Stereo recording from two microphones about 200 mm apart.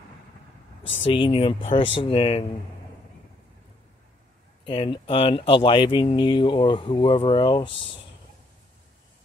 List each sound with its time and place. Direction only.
1.0 s speech: 25° left (ahead or behind)
4.6 s speech: 25° left (ahead or behind)